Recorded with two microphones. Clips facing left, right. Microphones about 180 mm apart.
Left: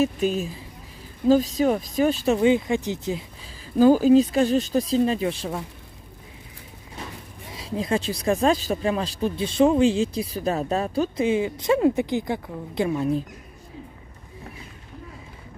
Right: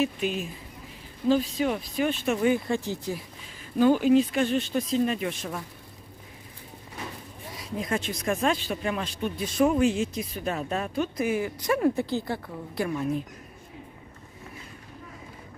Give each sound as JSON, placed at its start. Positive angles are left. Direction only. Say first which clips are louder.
{"t": 0.0, "sound": "speech", "louder": "left 5 dB", "side_deg": 40}
{"t": 2.4, "sound": "speech", "louder": "left 4 dB", "side_deg": 20}
{"t": 3.7, "sound": "speech", "louder": "left 4 dB", "side_deg": 35}
{"t": 7.5, "sound": "speech", "louder": "left 5 dB", "side_deg": 30}